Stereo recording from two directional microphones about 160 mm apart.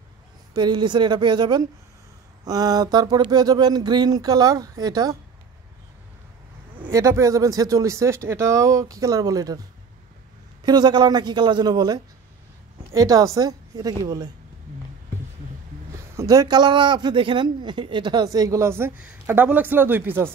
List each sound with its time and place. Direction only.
0.6 s a man's voice: 25° right (ahead or behind)
6.9 s a man's voice: 20° right (ahead or behind)
10.6 s a man's voice: 25° right (ahead or behind)
16.2 s a man's voice: 25° right (ahead or behind)